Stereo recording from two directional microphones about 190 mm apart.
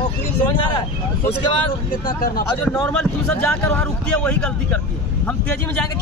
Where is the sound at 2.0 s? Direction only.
50° left (ahead or behind).